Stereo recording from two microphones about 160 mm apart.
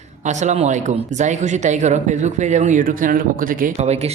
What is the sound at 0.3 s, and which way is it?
A man's voice, 45° right (ahead or behind).